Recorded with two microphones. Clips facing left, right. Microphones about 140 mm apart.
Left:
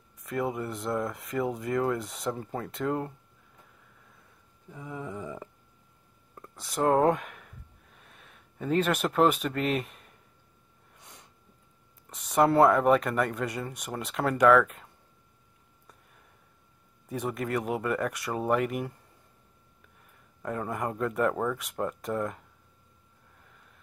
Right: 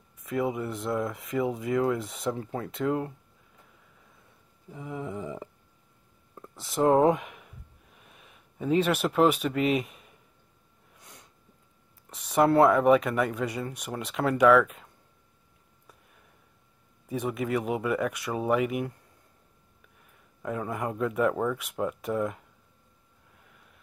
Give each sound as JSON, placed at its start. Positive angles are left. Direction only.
{"t": 0.2, "sound": "speech", "side_deg": 0}
{"t": 4.6, "sound": "a sound", "side_deg": -10}
{"t": 6.6, "sound": "a sound", "side_deg": 0}
{"t": 12.1, "sound": "speech", "side_deg": 0}
{"t": 17.1, "sound": "speech", "side_deg": 0}
{"t": 20.4, "sound": "speech", "side_deg": 0}